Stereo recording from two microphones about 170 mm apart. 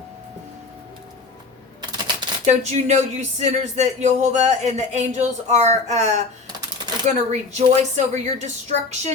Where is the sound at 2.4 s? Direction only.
45° right (ahead or behind).